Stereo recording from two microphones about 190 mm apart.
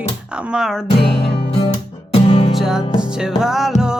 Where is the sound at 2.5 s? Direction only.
Centre (ahead or behind).